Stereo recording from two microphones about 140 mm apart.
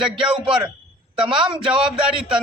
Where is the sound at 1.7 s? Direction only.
5° right (ahead or behind).